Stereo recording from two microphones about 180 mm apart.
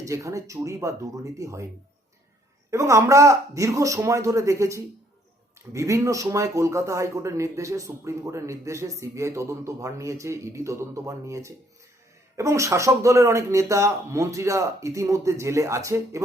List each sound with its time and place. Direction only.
0.0 s speech: 20° right (ahead or behind)
2.6 s speech: 15° right (ahead or behind)